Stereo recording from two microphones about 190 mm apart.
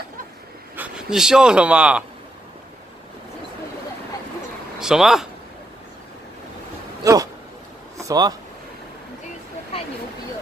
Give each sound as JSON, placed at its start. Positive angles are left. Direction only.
{"t": 0.7, "sound": "speech", "side_deg": -5}
{"t": 4.7, "sound": "speech", "side_deg": -5}
{"t": 7.0, "sound": "speech", "side_deg": -20}